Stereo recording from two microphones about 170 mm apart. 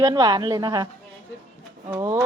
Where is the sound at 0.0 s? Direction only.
25° right (ahead or behind).